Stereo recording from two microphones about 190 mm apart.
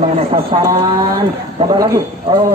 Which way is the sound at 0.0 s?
35° right (ahead or behind).